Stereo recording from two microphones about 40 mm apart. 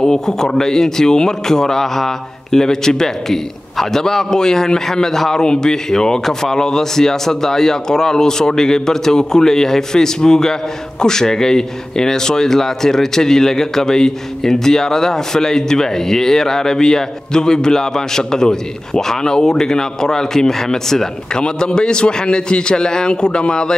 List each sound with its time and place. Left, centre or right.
0.0 s a man's voice: centre